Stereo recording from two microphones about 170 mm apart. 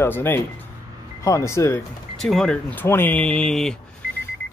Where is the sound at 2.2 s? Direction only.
Centre (ahead or behind).